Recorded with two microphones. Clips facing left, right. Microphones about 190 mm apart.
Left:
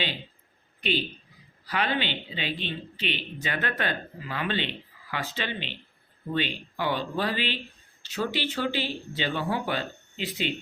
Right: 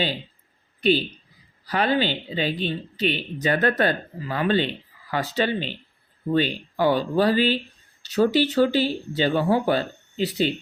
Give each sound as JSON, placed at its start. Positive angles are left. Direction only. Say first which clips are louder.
{"t": 0.8, "sound": "speech", "louder": "right 8 dB", "side_deg": -40}